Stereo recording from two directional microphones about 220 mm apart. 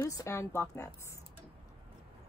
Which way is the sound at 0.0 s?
15° left (ahead or behind).